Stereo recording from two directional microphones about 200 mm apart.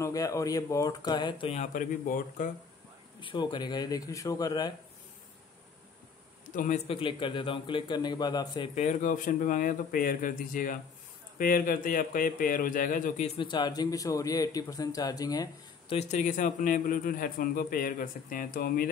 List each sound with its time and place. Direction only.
0.0 s a man's voice: 15° left (ahead or behind); by 2.5 s 40° left (ahead or behind)
3.2 s a man's voice: 25° left (ahead or behind)
6.5 s speech: 40° left (ahead or behind)
6.9 s a man's voice: 25° left (ahead or behind); by 13.3 s 40° left (ahead or behind)
13.4 s a man's voice: 20° left (ahead or behind)
16.0 s a man's voice: 35° left (ahead or behind)